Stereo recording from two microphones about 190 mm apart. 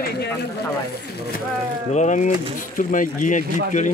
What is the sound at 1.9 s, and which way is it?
Speech, 40° left (ahead or behind).